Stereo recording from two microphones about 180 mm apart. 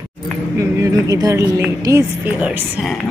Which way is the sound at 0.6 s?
15° right (ahead or behind).